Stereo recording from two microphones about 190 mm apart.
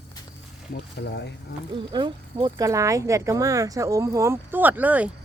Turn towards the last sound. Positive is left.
turn(degrees=-10)  # may be behind; listen again after turning